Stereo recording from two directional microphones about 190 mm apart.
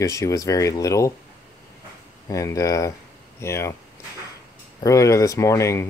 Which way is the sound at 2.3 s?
15° left (ahead or behind).